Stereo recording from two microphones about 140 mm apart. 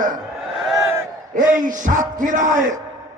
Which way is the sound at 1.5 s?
70° right (ahead or behind).